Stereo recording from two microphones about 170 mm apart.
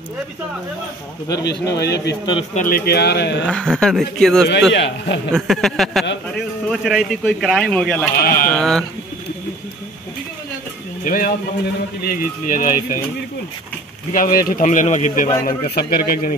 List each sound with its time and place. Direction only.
1.6 s a man's voice: 20° left (ahead or behind)
2.5 s speech: 55° left (ahead or behind); by 3.4 s 80° left
3.4 s a man's voice: 5° left (ahead or behind)
4.7 s a man's voice: 90° left
5.3 s a man's voice: centre (ahead or behind)
8.2 s speech: 60° left (ahead or behind)
8.5 s a man's voice: 5° left (ahead or behind)
11.1 s speech: 55° left (ahead or behind)
14.1 s speech: 55° left (ahead or behind)
15.4 s speech: 70° left (ahead or behind)